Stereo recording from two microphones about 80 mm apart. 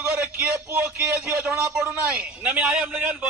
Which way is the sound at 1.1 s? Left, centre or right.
Centre.